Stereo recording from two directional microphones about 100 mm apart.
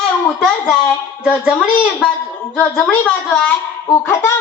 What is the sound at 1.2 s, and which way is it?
Speech, 10° right (ahead or behind).